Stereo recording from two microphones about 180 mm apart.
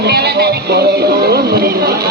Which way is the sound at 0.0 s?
65° right (ahead or behind).